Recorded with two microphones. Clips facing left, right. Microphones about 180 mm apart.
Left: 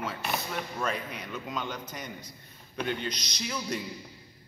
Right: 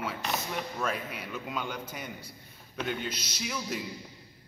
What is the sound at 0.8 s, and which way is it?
A man's voice, 5° right (ahead or behind).